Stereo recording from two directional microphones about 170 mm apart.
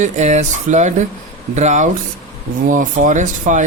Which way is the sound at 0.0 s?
45° right (ahead or behind).